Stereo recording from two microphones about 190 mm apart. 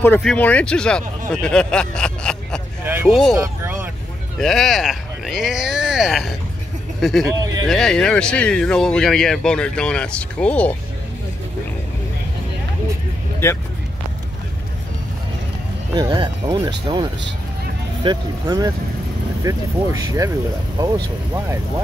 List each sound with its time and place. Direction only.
0.0 s speech: 5° left (ahead or behind)
2.8 s vehicle: 10° right (ahead or behind)
3.1 s speech: centre (ahead or behind)
3.3 s vehicle: 15° right (ahead or behind)
4.4 s speech: centre (ahead or behind)
13.4 s speech: 15° left (ahead or behind)
15.9 s speech: 20° right (ahead or behind)